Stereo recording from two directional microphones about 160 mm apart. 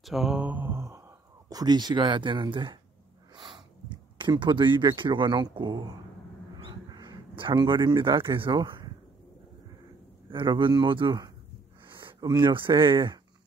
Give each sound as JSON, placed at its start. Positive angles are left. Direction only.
{"t": 0.0, "sound": "speech", "side_deg": 0}
{"t": 4.2, "sound": "speech", "side_deg": -30}
{"t": 6.5, "sound": "crow", "side_deg": -25}
{"t": 8.2, "sound": "speech", "side_deg": -30}
{"t": 10.3, "sound": "a man's voice", "side_deg": -30}